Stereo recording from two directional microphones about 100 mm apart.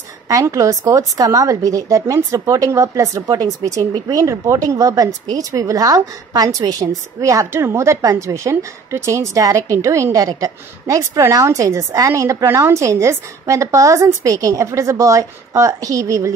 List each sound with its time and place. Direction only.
0.3 s speech: 35° right (ahead or behind)